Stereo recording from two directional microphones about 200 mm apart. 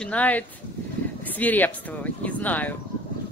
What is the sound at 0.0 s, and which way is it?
Speech, 5° left (ahead or behind).